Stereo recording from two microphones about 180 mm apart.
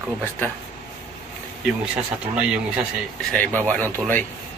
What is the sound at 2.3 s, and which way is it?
Speech, 5° right (ahead or behind).